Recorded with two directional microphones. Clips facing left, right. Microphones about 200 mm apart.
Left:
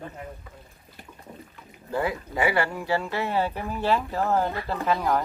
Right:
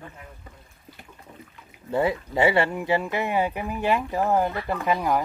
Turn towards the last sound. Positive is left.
turn(degrees=-15)  # may be behind; listen again after turning